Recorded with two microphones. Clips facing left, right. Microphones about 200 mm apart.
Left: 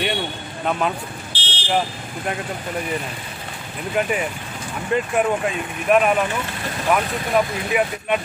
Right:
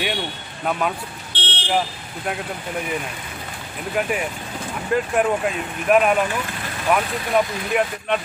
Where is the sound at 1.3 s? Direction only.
55° right (ahead or behind).